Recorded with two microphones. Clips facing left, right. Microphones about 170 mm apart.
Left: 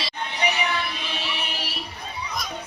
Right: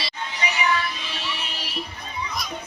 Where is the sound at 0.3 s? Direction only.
60° left (ahead or behind).